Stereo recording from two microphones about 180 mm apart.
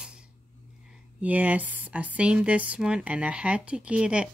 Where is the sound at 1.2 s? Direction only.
10° right (ahead or behind).